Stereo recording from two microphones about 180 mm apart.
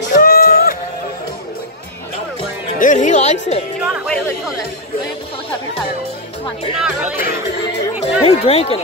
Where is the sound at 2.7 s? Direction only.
45° left (ahead or behind).